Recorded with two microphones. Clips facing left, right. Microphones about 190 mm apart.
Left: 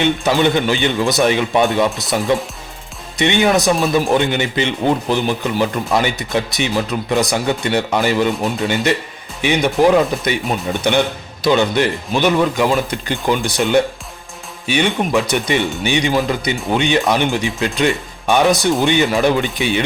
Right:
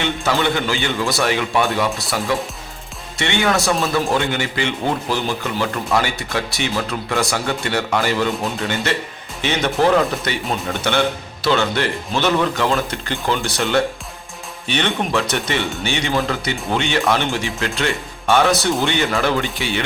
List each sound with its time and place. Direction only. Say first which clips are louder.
0.0 s a man's voice: left 5 dB; 20° left (ahead or behind)